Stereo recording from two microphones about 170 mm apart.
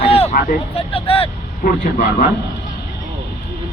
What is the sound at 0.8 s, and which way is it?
Speech, 35° left (ahead or behind).